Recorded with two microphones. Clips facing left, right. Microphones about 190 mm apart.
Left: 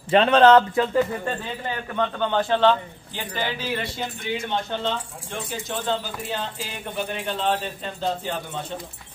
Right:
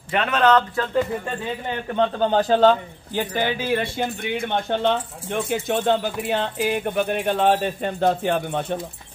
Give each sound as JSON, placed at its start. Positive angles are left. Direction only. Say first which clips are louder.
{"t": 0.1, "sound": "speech", "louder": "left 4 dB", "side_deg": 30}
{"t": 2.0, "sound": "speech", "louder": "right 4 dB", "side_deg": -35}